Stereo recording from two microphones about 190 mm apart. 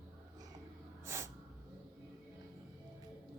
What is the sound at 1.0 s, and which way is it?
Snort, 15° right (ahead or behind).